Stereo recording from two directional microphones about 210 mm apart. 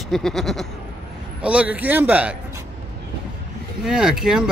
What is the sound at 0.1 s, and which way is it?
A man's voice, centre (ahead or behind).